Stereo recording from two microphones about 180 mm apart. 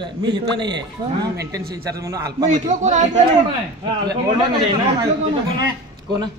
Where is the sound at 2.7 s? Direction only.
40° right (ahead or behind).